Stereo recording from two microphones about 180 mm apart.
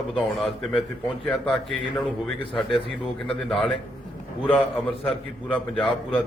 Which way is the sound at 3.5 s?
Centre (ahead or behind).